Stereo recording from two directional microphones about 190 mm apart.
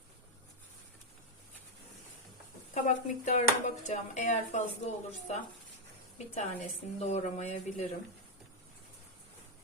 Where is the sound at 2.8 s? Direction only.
40° left (ahead or behind).